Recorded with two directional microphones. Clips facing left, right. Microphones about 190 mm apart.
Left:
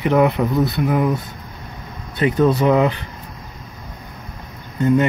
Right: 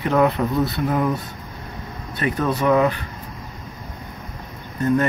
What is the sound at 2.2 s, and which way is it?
Speech, 20° left (ahead or behind).